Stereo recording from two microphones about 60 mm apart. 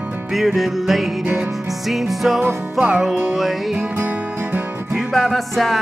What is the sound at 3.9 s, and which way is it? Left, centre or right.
Music, right.